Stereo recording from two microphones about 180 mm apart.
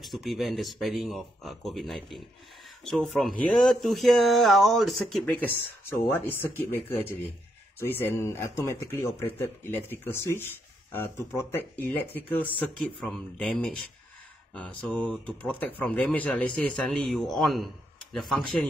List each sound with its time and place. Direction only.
0.0 s speech: centre (ahead or behind)